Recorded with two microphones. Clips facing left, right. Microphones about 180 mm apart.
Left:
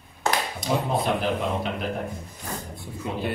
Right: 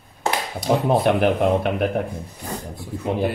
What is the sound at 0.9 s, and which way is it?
Speech, 65° right (ahead or behind).